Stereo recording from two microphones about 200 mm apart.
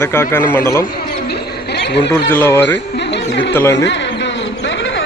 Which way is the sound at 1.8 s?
55° left (ahead or behind).